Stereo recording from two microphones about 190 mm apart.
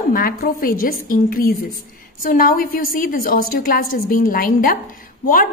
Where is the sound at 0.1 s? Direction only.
50° left (ahead or behind).